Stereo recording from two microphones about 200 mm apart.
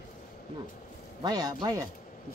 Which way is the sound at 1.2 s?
20° right (ahead or behind).